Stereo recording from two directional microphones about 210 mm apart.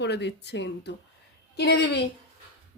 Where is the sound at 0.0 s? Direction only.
55° left (ahead or behind).